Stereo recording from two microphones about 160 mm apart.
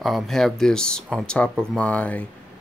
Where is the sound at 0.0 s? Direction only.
Centre (ahead or behind).